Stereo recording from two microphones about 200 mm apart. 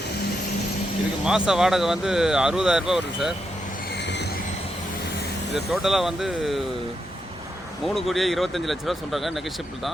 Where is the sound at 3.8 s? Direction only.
60° left (ahead or behind).